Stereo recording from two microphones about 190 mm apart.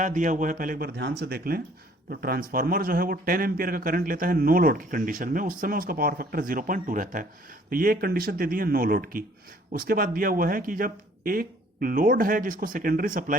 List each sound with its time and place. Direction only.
0.0 s speech: 45° right (ahead or behind)